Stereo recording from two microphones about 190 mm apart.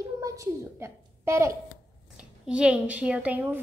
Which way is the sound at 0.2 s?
15° right (ahead or behind).